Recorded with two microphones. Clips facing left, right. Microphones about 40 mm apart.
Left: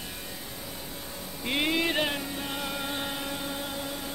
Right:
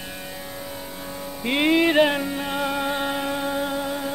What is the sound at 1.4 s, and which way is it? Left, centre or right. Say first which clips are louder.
Music: right 8 dB; right.